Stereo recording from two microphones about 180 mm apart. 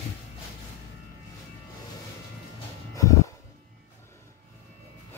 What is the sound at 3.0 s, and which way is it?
Music, 20° left (ahead or behind).